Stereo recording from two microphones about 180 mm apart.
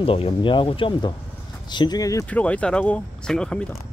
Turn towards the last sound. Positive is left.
turn(degrees=5)  # may be behind; listen again after turning